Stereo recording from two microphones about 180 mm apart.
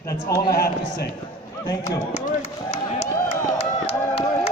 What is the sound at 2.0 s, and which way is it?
Speech, 40° left (ahead or behind).